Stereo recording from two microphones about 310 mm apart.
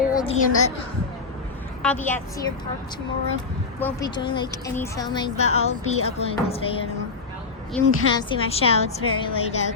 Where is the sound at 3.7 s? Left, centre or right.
Centre.